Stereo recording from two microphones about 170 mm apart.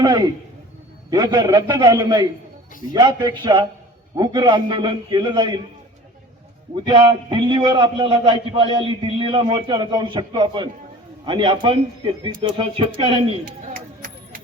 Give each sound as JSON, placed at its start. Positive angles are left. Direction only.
{"t": 0.0, "sound": "a man's voice", "side_deg": -25}
{"t": 6.7, "sound": "a man's voice", "side_deg": -25}
{"t": 13.4, "sound": "chop", "side_deg": -55}